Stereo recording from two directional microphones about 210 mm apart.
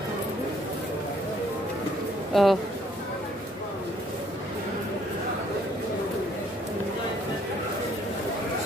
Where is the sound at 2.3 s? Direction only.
Centre (ahead or behind).